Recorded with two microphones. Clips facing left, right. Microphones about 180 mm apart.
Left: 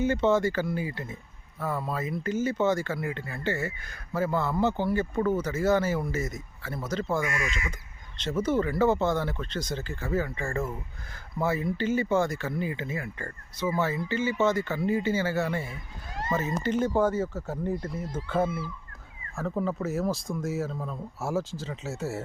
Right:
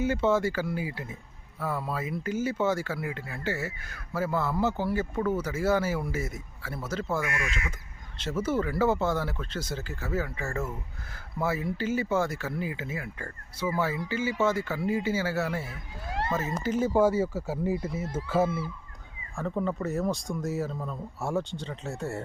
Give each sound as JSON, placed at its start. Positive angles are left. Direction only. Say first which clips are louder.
{"t": 0.0, "sound": "speech", "louder": "left 1 dB", "side_deg": -5}
{"t": 15.7, "sound": "speech", "louder": "right 4 dB", "side_deg": -70}
{"t": 16.3, "sound": "speech", "louder": "left 3 dB", "side_deg": -5}